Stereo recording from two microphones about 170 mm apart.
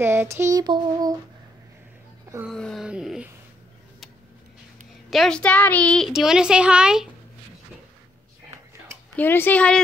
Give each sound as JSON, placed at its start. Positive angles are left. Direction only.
{"t": 0.0, "sound": "a sound", "side_deg": -15}
{"t": 2.5, "sound": "wail", "side_deg": 0}
{"t": 5.1, "sound": "a woman's voice", "side_deg": 0}
{"t": 9.1, "sound": "speech", "side_deg": 10}